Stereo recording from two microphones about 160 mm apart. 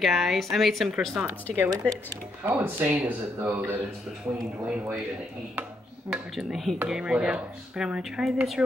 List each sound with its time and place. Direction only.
0.0 s speech: centre (ahead or behind)
1.2 s speech: 15° right (ahead or behind)
6.1 s speech: centre (ahead or behind)